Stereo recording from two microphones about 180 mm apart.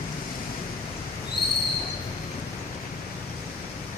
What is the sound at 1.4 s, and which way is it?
Owl, 60° left (ahead or behind).